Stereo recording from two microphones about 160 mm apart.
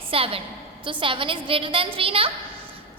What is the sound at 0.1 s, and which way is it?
A woman's voice, 35° right (ahead or behind).